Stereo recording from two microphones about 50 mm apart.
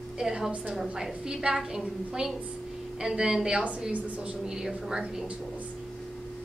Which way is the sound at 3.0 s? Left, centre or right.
Centre.